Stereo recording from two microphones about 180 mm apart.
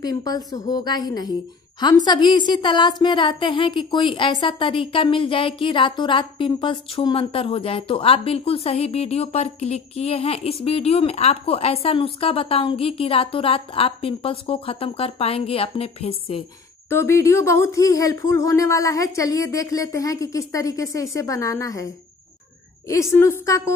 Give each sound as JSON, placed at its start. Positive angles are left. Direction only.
{"t": 0.0, "sound": "a woman's voice", "side_deg": 20}
{"t": 16.9, "sound": "speech", "side_deg": 15}